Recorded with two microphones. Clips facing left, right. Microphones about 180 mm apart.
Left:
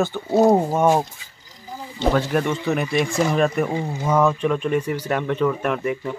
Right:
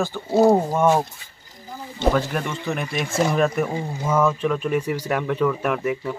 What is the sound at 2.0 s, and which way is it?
Speech, centre (ahead or behind).